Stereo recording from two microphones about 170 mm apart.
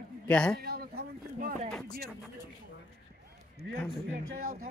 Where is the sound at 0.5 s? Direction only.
65° right (ahead or behind).